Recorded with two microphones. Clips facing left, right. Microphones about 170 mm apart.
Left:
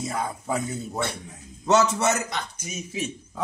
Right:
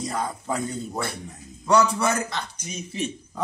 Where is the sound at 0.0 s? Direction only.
10° left (ahead or behind).